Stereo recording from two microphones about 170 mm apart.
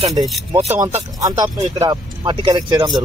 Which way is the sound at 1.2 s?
20° right (ahead or behind).